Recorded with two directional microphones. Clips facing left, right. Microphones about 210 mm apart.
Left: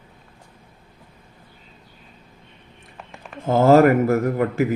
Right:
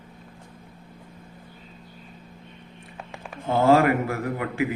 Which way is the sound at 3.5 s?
40° left (ahead or behind).